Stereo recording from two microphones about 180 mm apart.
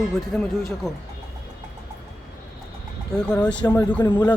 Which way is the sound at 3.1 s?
5° left (ahead or behind).